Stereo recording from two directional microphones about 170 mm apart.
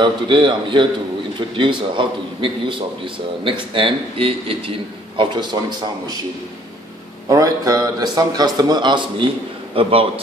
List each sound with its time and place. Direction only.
0.0 s a man's voice: 25° right (ahead or behind)
7.2 s a man's voice: 20° right (ahead or behind)